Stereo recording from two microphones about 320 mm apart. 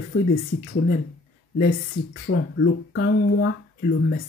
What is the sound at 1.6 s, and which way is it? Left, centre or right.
Speech, left.